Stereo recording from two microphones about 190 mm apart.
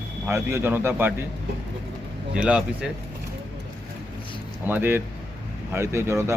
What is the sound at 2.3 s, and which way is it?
Speech, 5° right (ahead or behind).